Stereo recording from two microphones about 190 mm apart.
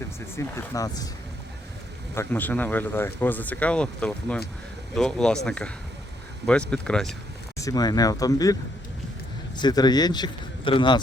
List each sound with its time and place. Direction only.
0.3 s speech: 15° left (ahead or behind)
2.1 s speech: 10° left (ahead or behind)
7.6 s a man's voice: 20° left (ahead or behind)
9.6 s a man's voice: 20° left (ahead or behind)